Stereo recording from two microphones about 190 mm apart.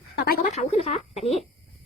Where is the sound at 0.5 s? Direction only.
30° left (ahead or behind).